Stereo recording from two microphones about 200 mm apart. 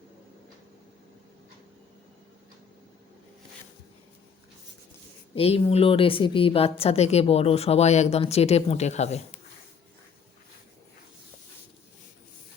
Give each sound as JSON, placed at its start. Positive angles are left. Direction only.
{"t": 5.3, "sound": "a woman's voice", "side_deg": 30}